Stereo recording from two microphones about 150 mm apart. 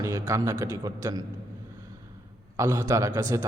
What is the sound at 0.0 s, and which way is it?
A man's voice, 20° right (ahead or behind).